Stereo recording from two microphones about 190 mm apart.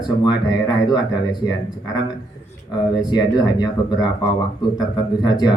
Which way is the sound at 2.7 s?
20° left (ahead or behind).